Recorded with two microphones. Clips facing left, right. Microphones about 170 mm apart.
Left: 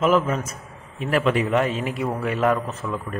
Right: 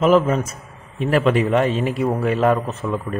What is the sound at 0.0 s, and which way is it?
A man's voice, 30° right (ahead or behind).